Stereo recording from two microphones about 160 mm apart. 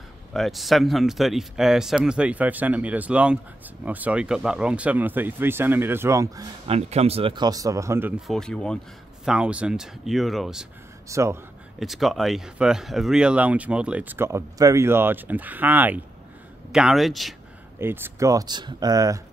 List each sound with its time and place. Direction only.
0.3 s speech: centre (ahead or behind); by 6.5 s 20° right (ahead or behind)
6.7 s speech: 40° right (ahead or behind); by 8.1 s 15° right (ahead or behind)
8.3 s speech: 5° left (ahead or behind)
9.2 s speech: 5° right (ahead or behind)
11.1 s speech: 20° right (ahead or behind)
11.8 s speech: centre (ahead or behind)
17.7 s speech: 15° right (ahead or behind)